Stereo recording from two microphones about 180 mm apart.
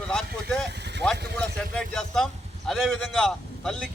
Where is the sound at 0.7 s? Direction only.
70° right (ahead or behind).